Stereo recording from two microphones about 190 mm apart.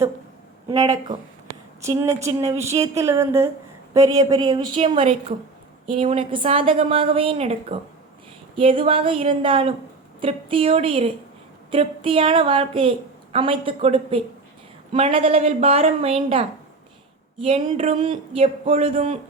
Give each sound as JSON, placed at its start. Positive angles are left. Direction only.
{"t": 1.8, "sound": "speech", "side_deg": -15}
{"t": 2.6, "sound": "speech", "side_deg": -35}
{"t": 2.8, "sound": "a woman's voice", "side_deg": -15}